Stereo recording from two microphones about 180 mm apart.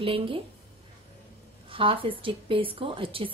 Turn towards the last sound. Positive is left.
turn(degrees=-30)  # may be behind; listen again after turning